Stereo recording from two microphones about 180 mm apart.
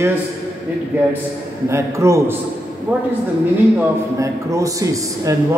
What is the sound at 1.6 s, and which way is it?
Speech, 15° right (ahead or behind).